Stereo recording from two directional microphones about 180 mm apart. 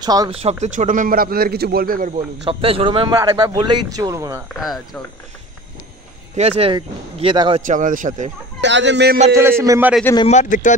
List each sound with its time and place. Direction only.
0.0 s speech: 20° right (ahead or behind)
0.4 s a man's voice: 40° right (ahead or behind); by 4.4 s 15° right (ahead or behind)
6.3 s speech: 35° right (ahead or behind)
7.6 s a man's voice: 45° right (ahead or behind)
8.5 s speech: 85° right
9.3 s a man's voice: 15° right (ahead or behind)
10.3 s speech: 45° left (ahead or behind)